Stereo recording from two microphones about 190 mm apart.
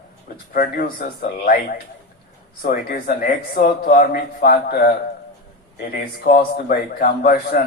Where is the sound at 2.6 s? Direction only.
50° left (ahead or behind).